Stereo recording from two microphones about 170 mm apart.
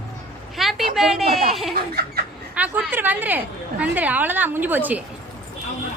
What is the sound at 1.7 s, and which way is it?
Laughter, 65° right (ahead or behind).